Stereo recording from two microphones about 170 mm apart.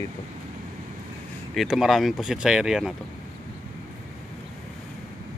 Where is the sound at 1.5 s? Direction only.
Centre (ahead or behind).